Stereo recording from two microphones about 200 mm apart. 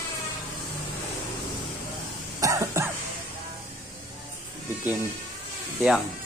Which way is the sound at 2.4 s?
15° right (ahead or behind).